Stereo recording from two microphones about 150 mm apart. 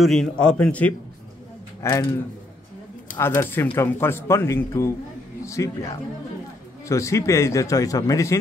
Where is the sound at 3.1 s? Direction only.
15° left (ahead or behind).